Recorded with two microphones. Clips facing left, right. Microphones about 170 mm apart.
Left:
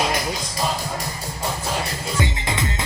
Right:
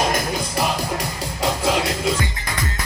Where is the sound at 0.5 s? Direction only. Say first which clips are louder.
Right 3 dB; 80° right.